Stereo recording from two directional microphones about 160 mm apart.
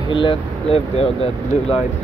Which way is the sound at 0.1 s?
30° left (ahead or behind).